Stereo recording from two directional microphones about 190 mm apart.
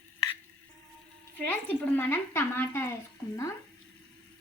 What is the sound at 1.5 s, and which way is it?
A woman's voice, 10° left (ahead or behind).